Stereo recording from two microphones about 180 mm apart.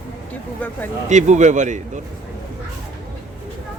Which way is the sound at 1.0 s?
40° right (ahead or behind).